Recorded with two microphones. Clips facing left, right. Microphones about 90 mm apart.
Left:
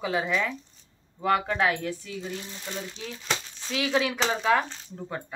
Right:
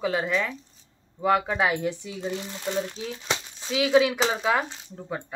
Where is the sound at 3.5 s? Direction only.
10° right (ahead or behind).